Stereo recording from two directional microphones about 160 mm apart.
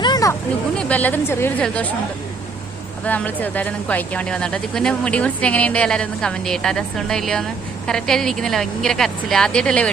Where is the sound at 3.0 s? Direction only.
10° left (ahead or behind).